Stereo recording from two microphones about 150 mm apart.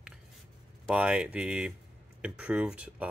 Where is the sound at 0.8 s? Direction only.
5° right (ahead or behind).